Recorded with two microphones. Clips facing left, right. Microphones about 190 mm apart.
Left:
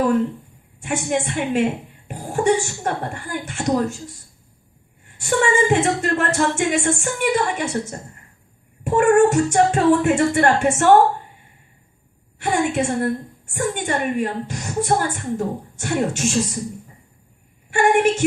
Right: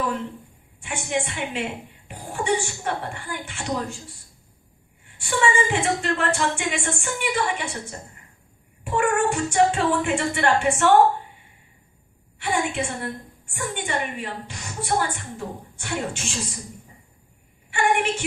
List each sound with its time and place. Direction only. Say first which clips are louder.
0.8 s a woman's voice: left 5 dB; 45° left (ahead or behind)
5.2 s a woman's voice: left 4 dB; 45° left (ahead or behind)
12.4 s a woman's voice: left 5 dB; 45° left (ahead or behind)
17.7 s a woman's voice: left 6 dB; 45° left (ahead or behind)